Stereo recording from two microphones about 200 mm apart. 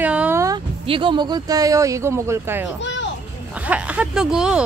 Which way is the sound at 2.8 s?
65° left (ahead or behind).